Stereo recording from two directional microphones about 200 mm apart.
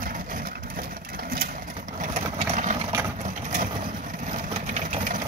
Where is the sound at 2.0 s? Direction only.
35° right (ahead or behind).